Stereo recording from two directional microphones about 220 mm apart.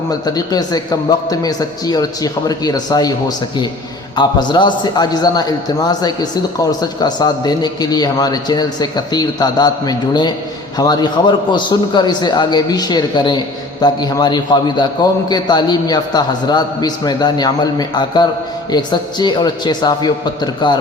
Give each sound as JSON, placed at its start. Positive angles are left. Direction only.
{"t": 0.3, "sound": "a man's voice", "side_deg": 15}